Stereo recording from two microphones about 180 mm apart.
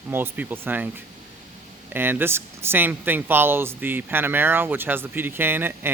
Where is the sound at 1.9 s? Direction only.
10° right (ahead or behind).